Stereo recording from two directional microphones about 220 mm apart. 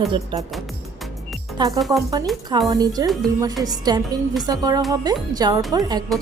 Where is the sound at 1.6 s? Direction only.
15° right (ahead or behind).